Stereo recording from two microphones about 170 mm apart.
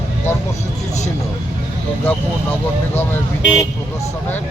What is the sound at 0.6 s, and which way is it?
Vehicle, 40° left (ahead or behind).